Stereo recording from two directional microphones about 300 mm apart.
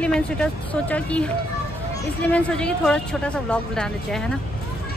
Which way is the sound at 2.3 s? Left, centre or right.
Centre.